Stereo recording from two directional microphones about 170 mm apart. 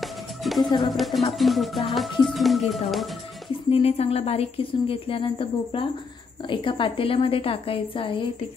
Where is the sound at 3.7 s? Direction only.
35° left (ahead or behind).